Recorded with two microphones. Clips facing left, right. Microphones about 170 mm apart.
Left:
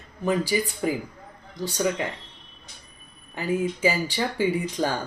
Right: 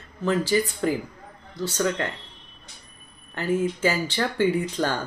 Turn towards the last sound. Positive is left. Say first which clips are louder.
# right 1 dB
turn(degrees=10)  # may be behind; listen again after turning